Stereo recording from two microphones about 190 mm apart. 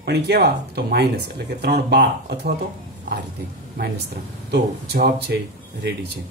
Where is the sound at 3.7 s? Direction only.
55° right (ahead or behind).